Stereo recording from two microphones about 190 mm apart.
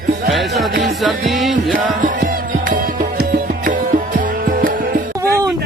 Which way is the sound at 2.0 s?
45° right (ahead or behind).